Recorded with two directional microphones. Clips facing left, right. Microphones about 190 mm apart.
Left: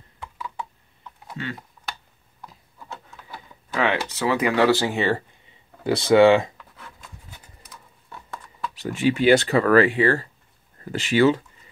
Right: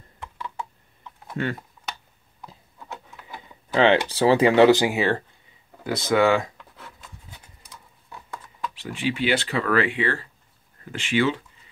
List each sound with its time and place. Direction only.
0.2 s a sound: centre (ahead or behind)
1.4 s speech: 55° right (ahead or behind)
3.7 s speech: 30° right (ahead or behind)
5.9 s speech: 30° left (ahead or behind)
8.7 s speech: 45° left (ahead or behind)